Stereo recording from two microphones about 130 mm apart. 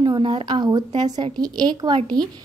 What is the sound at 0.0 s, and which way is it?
A woman's voice, 35° right (ahead or behind).